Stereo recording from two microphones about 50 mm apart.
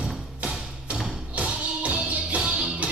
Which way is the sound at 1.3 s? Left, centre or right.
Right.